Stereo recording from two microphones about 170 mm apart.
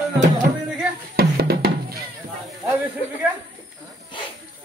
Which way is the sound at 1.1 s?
65° right (ahead or behind).